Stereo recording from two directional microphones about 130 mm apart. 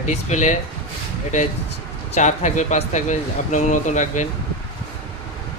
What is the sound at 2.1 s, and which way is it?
Speech, 65° left (ahead or behind).